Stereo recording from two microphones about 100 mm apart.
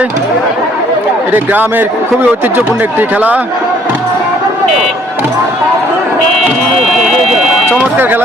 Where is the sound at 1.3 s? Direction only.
20° right (ahead or behind).